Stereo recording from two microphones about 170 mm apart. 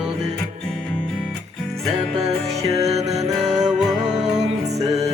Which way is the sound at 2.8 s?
40° right (ahead or behind).